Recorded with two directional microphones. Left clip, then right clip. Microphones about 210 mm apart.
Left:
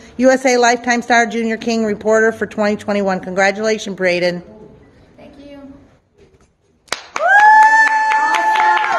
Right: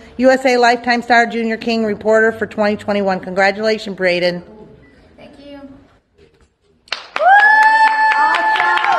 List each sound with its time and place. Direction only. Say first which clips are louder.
0.0 s a woman's voice: even; centre (ahead or behind)
6.9 s clapping: right 2 dB; 45° left (ahead or behind)